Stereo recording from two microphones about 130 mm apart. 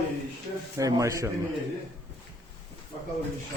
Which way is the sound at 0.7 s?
25° right (ahead or behind).